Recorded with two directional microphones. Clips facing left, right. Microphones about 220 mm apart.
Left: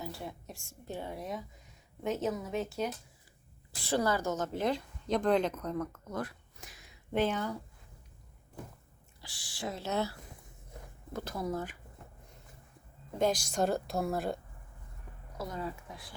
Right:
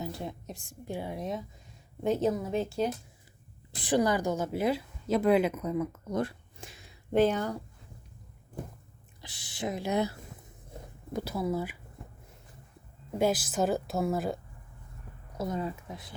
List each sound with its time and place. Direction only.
0.0 s speech: 20° right (ahead or behind)
2.0 s speech: 30° right (ahead or behind)
3.8 s a woman's voice: 15° right (ahead or behind)
6.1 s a sound: 30° right (ahead or behind)
7.1 s speech: 40° right (ahead or behind)
9.2 s speech: 20° right (ahead or behind)
11.1 s a woman's voice: 10° right (ahead or behind)
13.1 s a woman's voice: 5° right (ahead or behind)
15.4 s speech: 20° right (ahead or behind)